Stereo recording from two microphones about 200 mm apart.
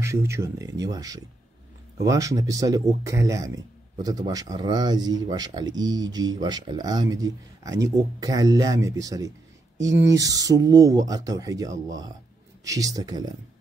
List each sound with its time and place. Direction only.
0.0 s speech: 15° right (ahead or behind)